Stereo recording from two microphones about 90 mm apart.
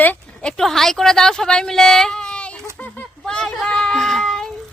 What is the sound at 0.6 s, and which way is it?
Speech, 5° left (ahead or behind).